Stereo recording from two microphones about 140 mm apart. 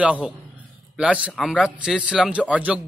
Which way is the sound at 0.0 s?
10° right (ahead or behind).